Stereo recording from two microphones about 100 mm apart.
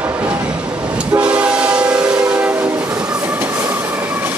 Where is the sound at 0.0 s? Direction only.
20° right (ahead or behind).